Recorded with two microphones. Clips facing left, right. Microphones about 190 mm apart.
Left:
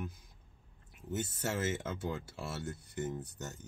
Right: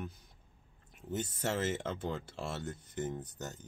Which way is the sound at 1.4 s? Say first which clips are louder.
Right 2 dB; 5° left (ahead or behind).